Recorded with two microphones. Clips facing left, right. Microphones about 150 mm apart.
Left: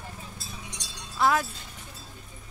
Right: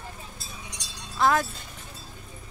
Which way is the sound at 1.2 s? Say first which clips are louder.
Right 1 dB; 10° left (ahead or behind).